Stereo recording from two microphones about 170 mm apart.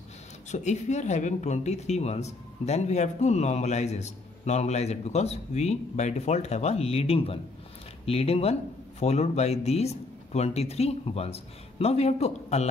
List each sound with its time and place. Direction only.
0.5 s speech: 45° left (ahead or behind)